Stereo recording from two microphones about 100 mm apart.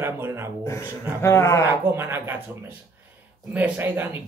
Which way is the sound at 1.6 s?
20° right (ahead or behind).